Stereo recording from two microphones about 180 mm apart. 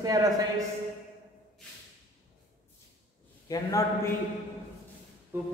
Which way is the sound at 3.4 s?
15° left (ahead or behind).